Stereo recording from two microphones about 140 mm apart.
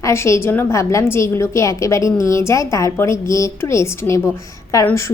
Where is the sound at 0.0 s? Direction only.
20° left (ahead or behind).